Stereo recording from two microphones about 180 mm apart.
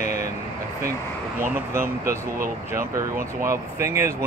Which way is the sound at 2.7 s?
15° right (ahead or behind).